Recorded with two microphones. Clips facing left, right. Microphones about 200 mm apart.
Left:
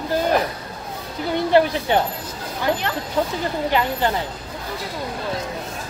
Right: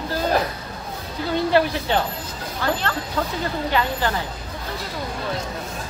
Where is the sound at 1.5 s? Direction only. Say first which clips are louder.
Left 4 dB; 15° left (ahead or behind).